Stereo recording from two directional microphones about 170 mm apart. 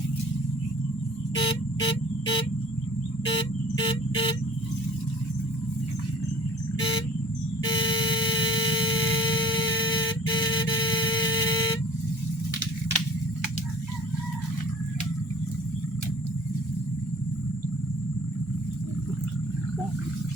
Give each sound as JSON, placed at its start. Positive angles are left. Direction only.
{"t": 1.4, "sound": "vehicle", "side_deg": 30}
{"t": 7.7, "sound": "vehicle", "side_deg": 30}
{"t": 11.1, "sound": "music", "side_deg": 25}